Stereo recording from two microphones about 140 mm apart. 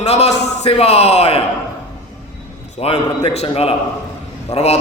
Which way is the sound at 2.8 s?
45° left (ahead or behind).